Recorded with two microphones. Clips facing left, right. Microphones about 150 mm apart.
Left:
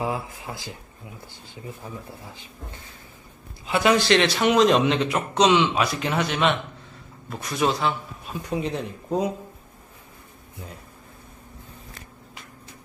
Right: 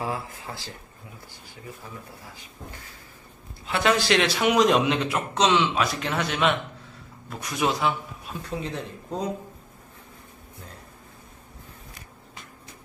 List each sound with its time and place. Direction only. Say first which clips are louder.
0.0 s speech: left 3 dB; 15° left (ahead or behind)
1.8 s speech: left 5 dB; 20° left (ahead or behind)
3.6 s a man's voice: left 3 dB; 5° left (ahead or behind)
8.5 s speech: left 5 dB; 15° left (ahead or behind)